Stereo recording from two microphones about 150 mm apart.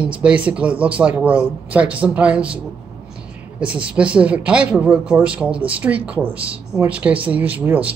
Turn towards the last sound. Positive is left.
turn(degrees=-10)  # may be behind; listen again after turning